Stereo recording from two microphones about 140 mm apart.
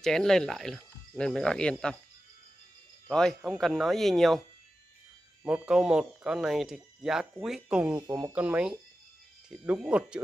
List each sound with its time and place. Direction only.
0.0 s speech: 5° left (ahead or behind)
3.1 s speech: 5° left (ahead or behind)
5.4 s speech: 5° right (ahead or behind)